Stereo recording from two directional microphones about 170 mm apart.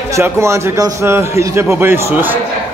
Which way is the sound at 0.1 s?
15° right (ahead or behind).